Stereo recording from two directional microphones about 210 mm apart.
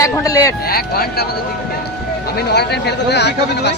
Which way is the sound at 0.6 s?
45° left (ahead or behind).